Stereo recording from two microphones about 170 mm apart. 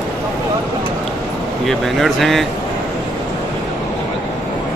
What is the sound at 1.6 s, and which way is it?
Speech, centre (ahead or behind).